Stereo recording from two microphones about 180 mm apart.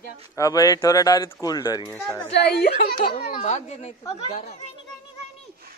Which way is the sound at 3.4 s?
40° left (ahead or behind).